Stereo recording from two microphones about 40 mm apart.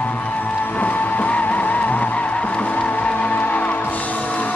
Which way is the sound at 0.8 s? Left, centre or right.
Left.